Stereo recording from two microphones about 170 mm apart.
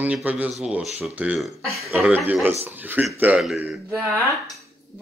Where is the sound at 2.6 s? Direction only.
10° right (ahead or behind).